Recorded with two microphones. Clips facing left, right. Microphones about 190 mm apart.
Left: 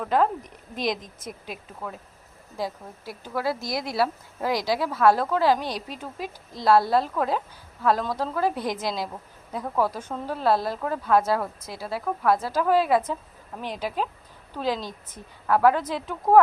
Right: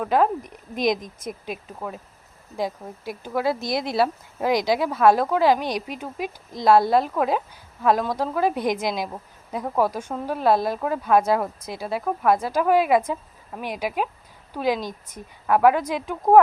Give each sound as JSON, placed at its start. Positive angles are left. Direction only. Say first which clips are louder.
{"t": 0.0, "sound": "speech", "louder": "right 2 dB", "side_deg": -10}